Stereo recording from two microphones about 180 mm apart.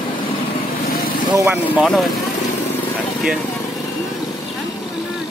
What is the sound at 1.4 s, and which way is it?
Speech, 10° right (ahead or behind).